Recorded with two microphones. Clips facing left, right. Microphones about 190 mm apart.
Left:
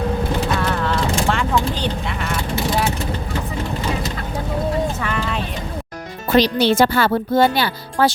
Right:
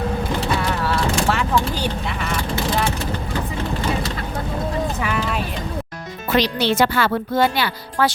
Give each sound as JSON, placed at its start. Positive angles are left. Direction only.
{"t": 0.9, "sound": "vehicle", "side_deg": -5}
{"t": 5.0, "sound": "a sound", "side_deg": -5}
{"t": 6.3, "sound": "speech", "side_deg": 35}